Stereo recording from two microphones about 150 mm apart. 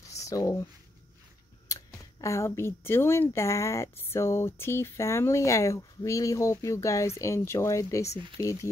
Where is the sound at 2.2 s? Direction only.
20° left (ahead or behind).